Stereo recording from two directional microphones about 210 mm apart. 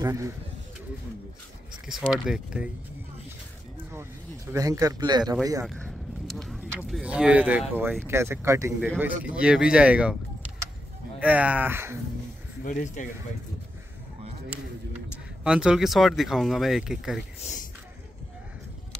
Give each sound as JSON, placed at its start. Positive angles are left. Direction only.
{"t": 0.0, "sound": "speech", "side_deg": -15}
{"t": 1.9, "sound": "speech", "side_deg": 0}
{"t": 3.9, "sound": "speech", "side_deg": -10}
{"t": 5.7, "sound": "a sound", "side_deg": 5}
{"t": 8.0, "sound": "speech", "side_deg": -10}
{"t": 11.1, "sound": "speech", "side_deg": -5}
{"t": 12.6, "sound": "speech", "side_deg": 35}
{"t": 15.4, "sound": "speech", "side_deg": -5}
{"t": 17.4, "sound": "a sound", "side_deg": 35}